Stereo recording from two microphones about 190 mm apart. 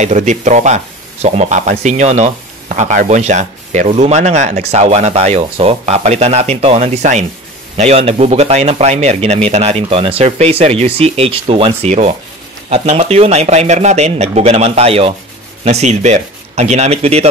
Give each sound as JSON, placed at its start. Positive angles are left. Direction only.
{"t": 0.0, "sound": "speech", "side_deg": -40}